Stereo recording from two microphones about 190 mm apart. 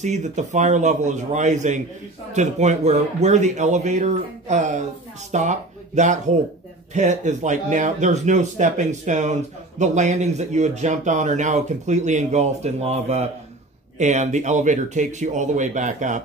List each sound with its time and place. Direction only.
0.0 s speech: 40° right (ahead or behind)